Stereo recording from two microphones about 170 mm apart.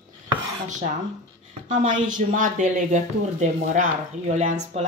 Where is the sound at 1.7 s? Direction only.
50° right (ahead or behind).